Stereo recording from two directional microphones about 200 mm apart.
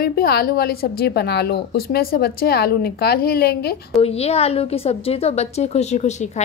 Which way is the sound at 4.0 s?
30° left (ahead or behind).